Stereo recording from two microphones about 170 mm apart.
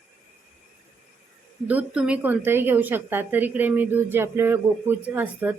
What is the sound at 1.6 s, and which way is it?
Speech, 5° right (ahead or behind).